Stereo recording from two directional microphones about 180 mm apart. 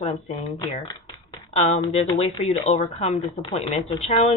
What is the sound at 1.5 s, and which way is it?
Speech, 35° left (ahead or behind).